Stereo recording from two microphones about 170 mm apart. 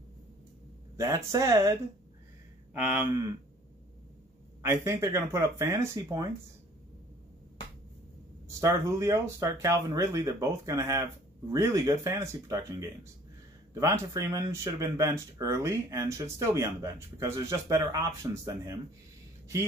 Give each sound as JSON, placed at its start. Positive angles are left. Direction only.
{"t": 0.9, "sound": "speech", "side_deg": -20}
{"t": 2.8, "sound": "speech", "side_deg": -10}
{"t": 4.6, "sound": "speech", "side_deg": -15}
{"t": 8.5, "sound": "speech", "side_deg": -20}